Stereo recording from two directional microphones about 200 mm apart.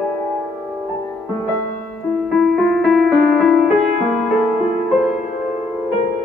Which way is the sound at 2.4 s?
Centre (ahead or behind).